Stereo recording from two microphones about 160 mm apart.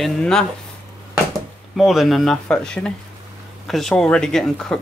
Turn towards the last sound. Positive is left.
turn(degrees=0)  # may be behind; listen again after turning